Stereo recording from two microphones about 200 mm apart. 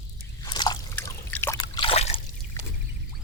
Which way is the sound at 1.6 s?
25° left (ahead or behind).